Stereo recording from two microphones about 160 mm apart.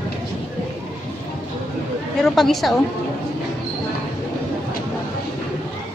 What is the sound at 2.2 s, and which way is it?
Speech, centre (ahead or behind).